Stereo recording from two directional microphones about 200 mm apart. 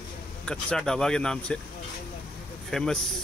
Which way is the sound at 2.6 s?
Centre (ahead or behind).